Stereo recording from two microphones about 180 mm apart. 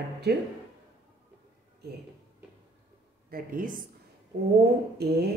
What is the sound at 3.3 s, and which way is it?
Speech, 50° right (ahead or behind).